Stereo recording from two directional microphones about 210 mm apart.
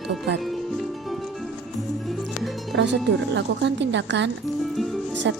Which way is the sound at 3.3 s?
55° right (ahead or behind).